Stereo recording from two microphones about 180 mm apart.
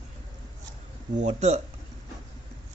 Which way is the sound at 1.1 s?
40° right (ahead or behind).